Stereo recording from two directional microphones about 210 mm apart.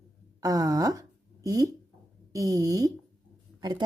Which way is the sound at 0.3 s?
15° right (ahead or behind).